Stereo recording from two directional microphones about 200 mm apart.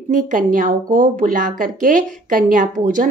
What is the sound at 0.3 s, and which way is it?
Speech, 40° right (ahead or behind).